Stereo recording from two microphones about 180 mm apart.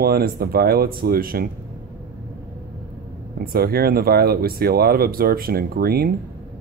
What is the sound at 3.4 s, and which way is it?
Speech, 60° right (ahead or behind).